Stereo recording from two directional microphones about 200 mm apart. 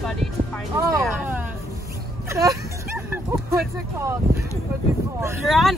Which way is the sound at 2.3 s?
15° right (ahead or behind).